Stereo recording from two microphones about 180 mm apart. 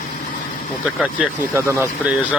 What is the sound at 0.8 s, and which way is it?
Speech, 10° right (ahead or behind).